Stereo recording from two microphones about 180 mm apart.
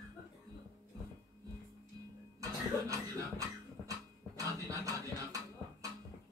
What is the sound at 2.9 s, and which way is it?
Beatboxing, 20° right (ahead or behind).